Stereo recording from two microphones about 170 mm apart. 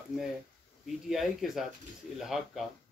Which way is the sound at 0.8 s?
Centre (ahead or behind).